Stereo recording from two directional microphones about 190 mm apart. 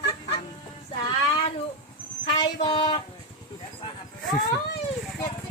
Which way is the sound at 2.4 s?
30° left (ahead or behind).